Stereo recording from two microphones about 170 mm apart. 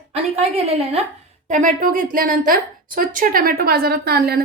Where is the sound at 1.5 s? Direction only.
50° right (ahead or behind); by 4.4 s 70° right (ahead or behind).